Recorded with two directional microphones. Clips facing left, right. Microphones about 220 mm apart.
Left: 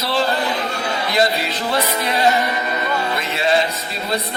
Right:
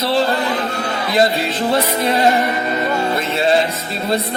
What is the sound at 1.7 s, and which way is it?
Music, 25° right (ahead or behind).